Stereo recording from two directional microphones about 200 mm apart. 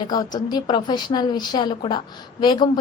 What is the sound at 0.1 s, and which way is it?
A woman's voice, 20° left (ahead or behind).